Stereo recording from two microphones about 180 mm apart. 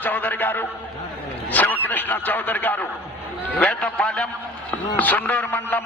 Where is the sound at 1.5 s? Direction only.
10° left (ahead or behind).